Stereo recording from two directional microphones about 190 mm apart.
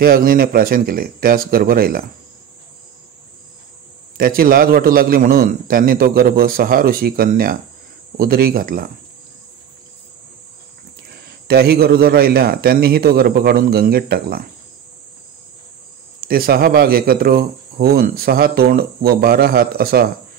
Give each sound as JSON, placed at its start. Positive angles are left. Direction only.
{"t": 0.0, "sound": "speech", "side_deg": -50}
{"t": 4.2, "sound": "speech", "side_deg": -50}
{"t": 11.4, "sound": "speech", "side_deg": -55}
{"t": 16.2, "sound": "speech", "side_deg": -50}